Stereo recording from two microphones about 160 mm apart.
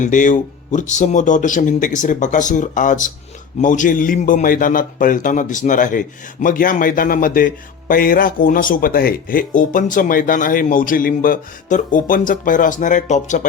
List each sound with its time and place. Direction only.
0.0 s a man's voice: 50° left (ahead or behind)